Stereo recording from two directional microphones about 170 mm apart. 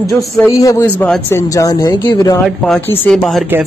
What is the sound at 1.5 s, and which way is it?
Speech, 20° left (ahead or behind).